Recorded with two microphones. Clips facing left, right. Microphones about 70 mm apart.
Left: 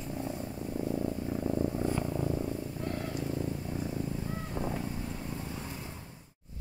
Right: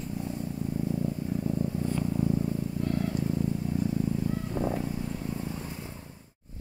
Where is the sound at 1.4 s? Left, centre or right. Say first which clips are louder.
Left 2 dB; left.